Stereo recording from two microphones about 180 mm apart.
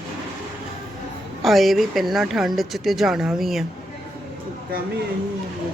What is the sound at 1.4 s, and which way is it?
Speech, centre (ahead or behind).